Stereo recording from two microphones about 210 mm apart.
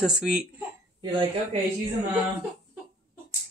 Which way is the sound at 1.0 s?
25° right (ahead or behind).